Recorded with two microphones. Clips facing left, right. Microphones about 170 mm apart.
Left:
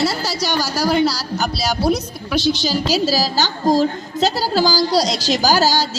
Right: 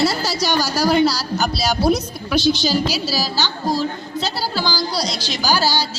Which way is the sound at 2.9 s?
40° left (ahead or behind).